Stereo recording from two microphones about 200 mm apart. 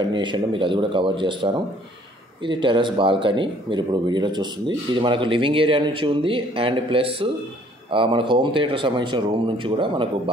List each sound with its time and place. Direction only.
0.1 s speech: 25° right (ahead or behind)